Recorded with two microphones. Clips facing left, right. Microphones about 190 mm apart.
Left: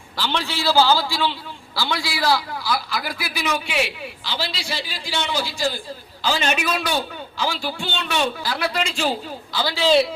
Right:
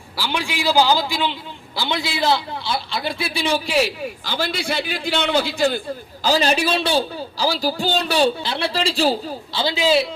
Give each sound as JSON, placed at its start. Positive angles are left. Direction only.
{"t": 0.2, "sound": "a man's voice", "side_deg": -10}
{"t": 6.2, "sound": "a man's voice", "side_deg": -35}
{"t": 9.8, "sound": "a man's voice", "side_deg": -5}